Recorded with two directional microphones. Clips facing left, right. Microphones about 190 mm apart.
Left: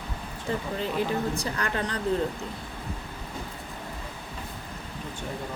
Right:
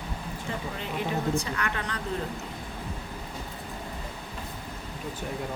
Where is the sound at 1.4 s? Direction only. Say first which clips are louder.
Left 2 dB; 35° left (ahead or behind).